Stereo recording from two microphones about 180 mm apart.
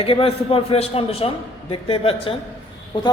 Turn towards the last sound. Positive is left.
turn(degrees=25)  # may be behind; listen again after turning